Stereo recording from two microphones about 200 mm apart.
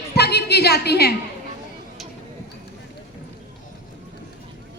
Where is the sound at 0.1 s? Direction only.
55° left (ahead or behind).